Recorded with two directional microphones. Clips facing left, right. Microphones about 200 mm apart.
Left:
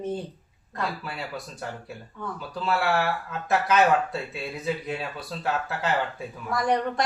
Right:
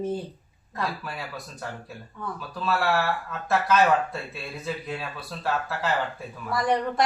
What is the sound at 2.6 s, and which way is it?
Speech, 15° left (ahead or behind).